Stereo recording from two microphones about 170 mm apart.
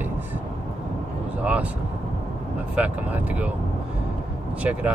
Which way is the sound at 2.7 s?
5° right (ahead or behind).